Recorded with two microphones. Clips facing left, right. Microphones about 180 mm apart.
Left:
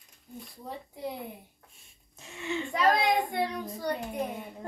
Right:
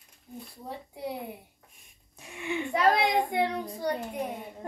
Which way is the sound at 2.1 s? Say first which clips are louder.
Right 1 dB; 15° right (ahead or behind).